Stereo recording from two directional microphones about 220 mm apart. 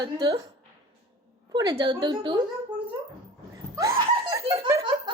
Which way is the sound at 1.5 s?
20° right (ahead or behind).